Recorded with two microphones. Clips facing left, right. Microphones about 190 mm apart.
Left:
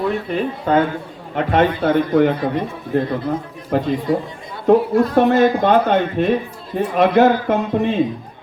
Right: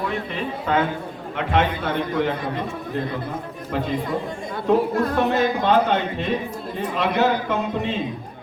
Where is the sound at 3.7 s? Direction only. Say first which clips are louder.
Left 7 dB; 50° left (ahead or behind).